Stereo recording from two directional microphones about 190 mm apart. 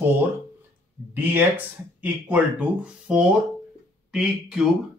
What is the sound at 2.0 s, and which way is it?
Speech, 10° right (ahead or behind).